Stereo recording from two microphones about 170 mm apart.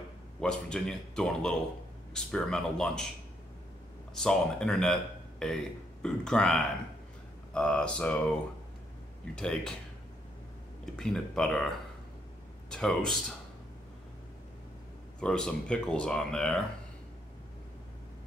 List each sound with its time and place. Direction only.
0.4 s speech: 5° left (ahead or behind)
4.1 s speech: 5° left (ahead or behind)
9.3 s speech: 5° left (ahead or behind)
11.0 s speech: 5° left (ahead or behind)
12.7 s speech: 5° left (ahead or behind)
15.1 s speech: 5° left (ahead or behind)